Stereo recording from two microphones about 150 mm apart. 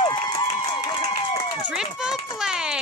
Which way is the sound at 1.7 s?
5° right (ahead or behind).